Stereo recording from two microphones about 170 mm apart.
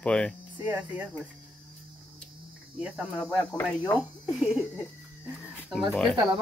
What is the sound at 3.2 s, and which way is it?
Speech, 10° left (ahead or behind).